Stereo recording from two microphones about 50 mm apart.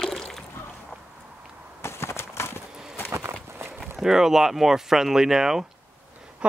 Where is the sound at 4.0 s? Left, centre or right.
Centre.